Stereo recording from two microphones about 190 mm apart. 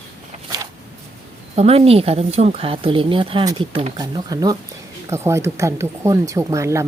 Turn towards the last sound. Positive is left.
turn(degrees=-15)  # may be behind; listen again after turning